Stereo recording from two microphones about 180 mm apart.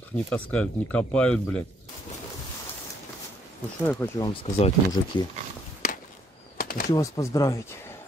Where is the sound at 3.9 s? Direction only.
15° left (ahead or behind).